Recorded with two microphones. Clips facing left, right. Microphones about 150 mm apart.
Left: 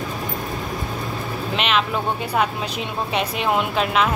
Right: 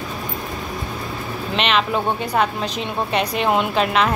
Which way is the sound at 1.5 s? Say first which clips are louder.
Right 2 dB; centre (ahead or behind).